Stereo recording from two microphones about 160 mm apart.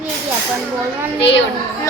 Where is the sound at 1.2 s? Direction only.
90° left.